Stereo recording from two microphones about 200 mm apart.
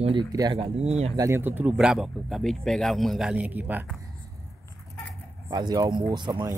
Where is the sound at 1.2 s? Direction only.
10° right (ahead or behind).